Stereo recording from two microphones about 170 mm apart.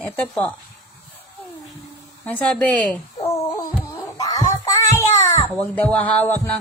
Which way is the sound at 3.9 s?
20° left (ahead or behind).